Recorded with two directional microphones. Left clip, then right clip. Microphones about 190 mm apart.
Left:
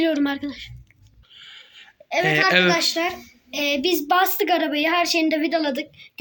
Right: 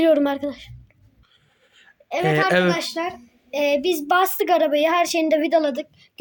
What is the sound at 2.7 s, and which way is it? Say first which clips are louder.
A woman's voice: left 3 dB; 50° right (ahead or behind).